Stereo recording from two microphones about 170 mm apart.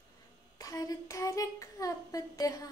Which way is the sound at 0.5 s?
20° left (ahead or behind).